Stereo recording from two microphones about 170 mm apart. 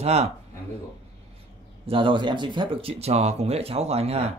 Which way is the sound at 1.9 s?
30° right (ahead or behind).